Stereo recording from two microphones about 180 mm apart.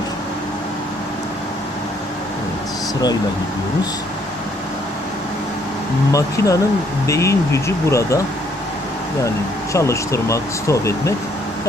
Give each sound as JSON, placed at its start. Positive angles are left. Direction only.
{"t": 6.1, "sound": "speech", "side_deg": 20}
{"t": 9.7, "sound": "speech", "side_deg": 15}